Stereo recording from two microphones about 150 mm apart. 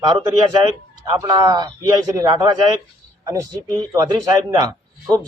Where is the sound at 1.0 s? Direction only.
25° right (ahead or behind).